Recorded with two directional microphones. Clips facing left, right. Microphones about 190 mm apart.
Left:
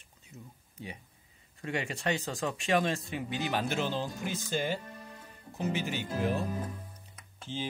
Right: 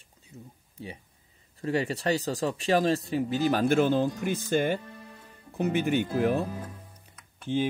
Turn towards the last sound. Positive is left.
turn(degrees=-60)  # may be behind; listen again after turning